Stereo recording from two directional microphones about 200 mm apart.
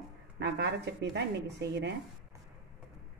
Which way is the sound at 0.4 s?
60° right (ahead or behind).